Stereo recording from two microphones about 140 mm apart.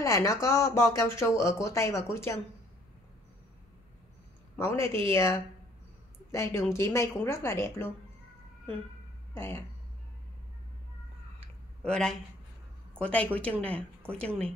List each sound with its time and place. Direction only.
0.0 s speech: 25° left (ahead or behind)
4.6 s a woman's voice: 20° left (ahead or behind)
9.3 s speech: 15° left (ahead or behind)
11.8 s a woman's voice: 5° left (ahead or behind)